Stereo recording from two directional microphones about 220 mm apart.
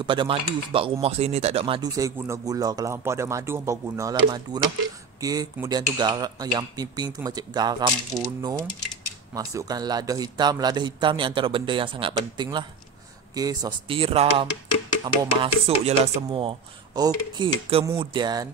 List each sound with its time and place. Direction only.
0.0 s a man's voice: 20° right (ahead or behind)